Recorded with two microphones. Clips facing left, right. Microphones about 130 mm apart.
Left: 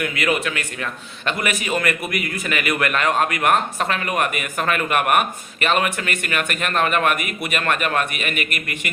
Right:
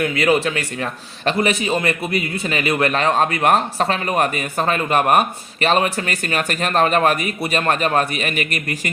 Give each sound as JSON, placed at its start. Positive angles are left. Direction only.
{"t": 0.0, "sound": "a man's voice", "side_deg": -30}